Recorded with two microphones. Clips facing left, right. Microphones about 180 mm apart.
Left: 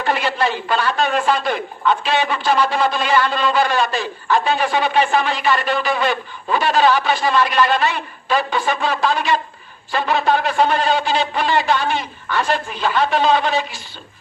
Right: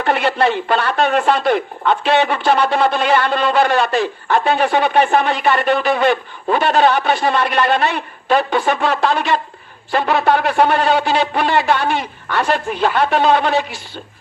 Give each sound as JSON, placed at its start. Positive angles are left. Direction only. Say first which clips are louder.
{"t": 0.0, "sound": "speech", "louder": "right 4 dB", "side_deg": -60}